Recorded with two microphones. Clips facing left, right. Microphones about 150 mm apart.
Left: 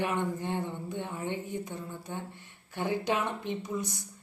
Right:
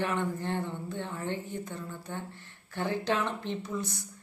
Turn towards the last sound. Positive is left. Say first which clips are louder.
# even
turn(degrees=15)  # may be behind; listen again after turning